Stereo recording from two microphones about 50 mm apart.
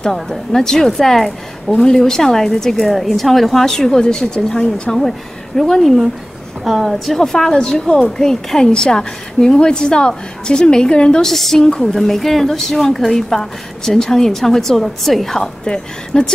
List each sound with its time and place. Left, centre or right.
0.0 s a woman's voice: centre
11.2 s a woman's voice: centre